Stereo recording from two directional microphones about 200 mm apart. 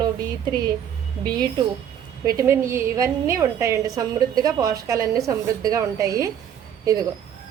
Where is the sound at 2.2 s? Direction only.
15° right (ahead or behind).